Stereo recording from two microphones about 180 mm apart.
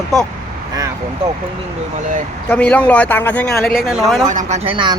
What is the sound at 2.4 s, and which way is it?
A man's voice, 10° left (ahead or behind).